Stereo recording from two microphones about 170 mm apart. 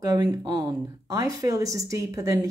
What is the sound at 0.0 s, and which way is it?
A woman's voice, 20° right (ahead or behind).